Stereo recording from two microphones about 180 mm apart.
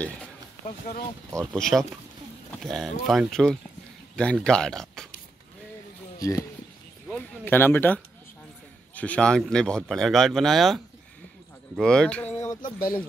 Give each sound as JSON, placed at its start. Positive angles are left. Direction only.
{"t": 1.5, "sound": "speech", "side_deg": 5}
{"t": 6.1, "sound": "speech", "side_deg": 20}
{"t": 12.7, "sound": "speech", "side_deg": 50}